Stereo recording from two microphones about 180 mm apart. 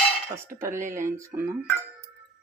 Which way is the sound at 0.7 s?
45° right (ahead or behind).